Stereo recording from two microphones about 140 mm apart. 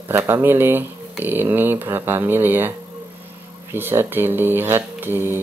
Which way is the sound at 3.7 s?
15° right (ahead or behind).